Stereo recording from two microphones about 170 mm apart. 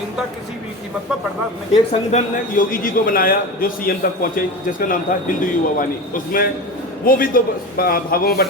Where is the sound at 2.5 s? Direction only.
55° left (ahead or behind).